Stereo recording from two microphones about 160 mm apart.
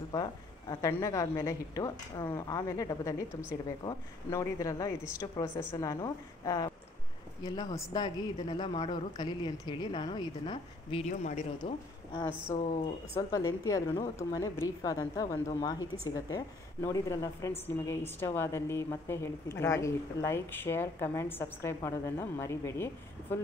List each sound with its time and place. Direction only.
0.1 s a woman's voice: 25° left (ahead or behind)
11.1 s speech: 45° left (ahead or behind)
13.1 s a woman's voice: 20° left (ahead or behind)